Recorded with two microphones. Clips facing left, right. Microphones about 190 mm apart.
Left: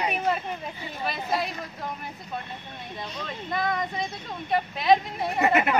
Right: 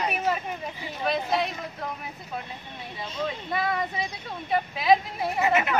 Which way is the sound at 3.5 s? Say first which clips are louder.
Left 3 dB; 5° right (ahead or behind).